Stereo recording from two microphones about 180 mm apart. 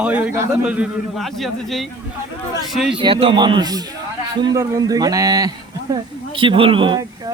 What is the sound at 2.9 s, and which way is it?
Speech, 30° right (ahead or behind).